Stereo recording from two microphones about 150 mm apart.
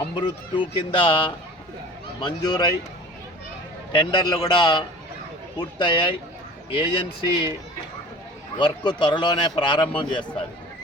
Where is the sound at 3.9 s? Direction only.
30° left (ahead or behind).